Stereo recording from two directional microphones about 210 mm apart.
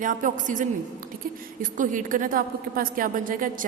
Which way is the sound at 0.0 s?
40° right (ahead or behind).